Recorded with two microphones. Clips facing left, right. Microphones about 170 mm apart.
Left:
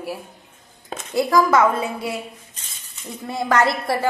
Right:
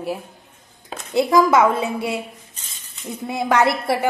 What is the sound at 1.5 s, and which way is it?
Speech, 25° right (ahead or behind).